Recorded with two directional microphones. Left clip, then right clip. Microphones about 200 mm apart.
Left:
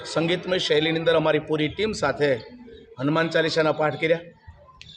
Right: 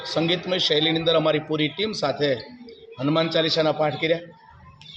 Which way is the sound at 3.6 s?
Centre (ahead or behind).